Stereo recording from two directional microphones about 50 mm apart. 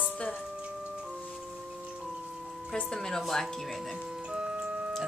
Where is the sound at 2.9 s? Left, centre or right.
Centre.